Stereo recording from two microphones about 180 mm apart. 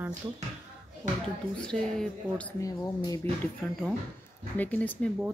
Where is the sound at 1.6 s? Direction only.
5° left (ahead or behind).